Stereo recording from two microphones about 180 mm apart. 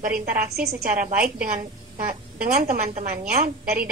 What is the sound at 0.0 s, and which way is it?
A woman's voice, 50° right (ahead or behind).